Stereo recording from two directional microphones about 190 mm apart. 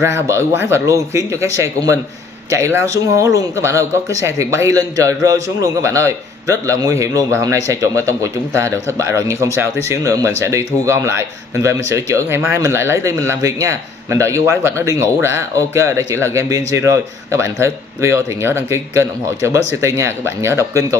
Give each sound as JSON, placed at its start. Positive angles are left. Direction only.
{"t": 0.0, "sound": "a man's voice", "side_deg": -15}